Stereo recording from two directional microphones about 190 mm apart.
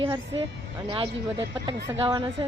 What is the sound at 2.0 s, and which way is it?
Speech, 20° right (ahead or behind).